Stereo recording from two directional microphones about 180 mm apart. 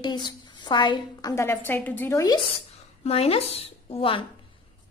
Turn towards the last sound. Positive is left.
turn(degrees=30)  # may be behind; listen again after turning